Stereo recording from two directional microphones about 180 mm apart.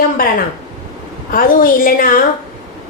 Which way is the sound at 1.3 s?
50° left (ahead or behind).